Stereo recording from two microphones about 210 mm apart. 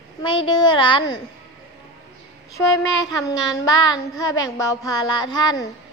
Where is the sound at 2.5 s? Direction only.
20° left (ahead or behind).